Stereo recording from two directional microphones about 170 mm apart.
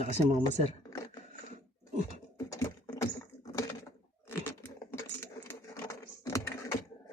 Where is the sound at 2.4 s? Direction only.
15° left (ahead or behind).